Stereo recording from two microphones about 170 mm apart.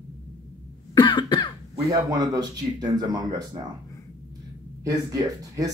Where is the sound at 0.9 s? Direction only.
25° left (ahead or behind).